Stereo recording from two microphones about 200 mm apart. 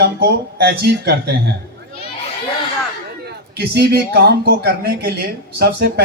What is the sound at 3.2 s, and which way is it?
A man's voice, 55° right (ahead or behind).